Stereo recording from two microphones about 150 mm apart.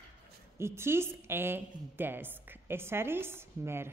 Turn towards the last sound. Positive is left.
turn(degrees=-15)  # may be behind; listen again after turning